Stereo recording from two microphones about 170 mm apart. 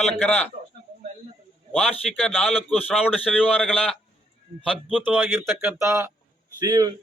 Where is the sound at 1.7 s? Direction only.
5° left (ahead or behind); by 5.3 s 10° right (ahead or behind).